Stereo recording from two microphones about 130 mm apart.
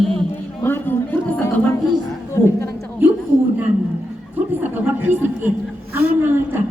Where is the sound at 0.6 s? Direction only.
15° left (ahead or behind).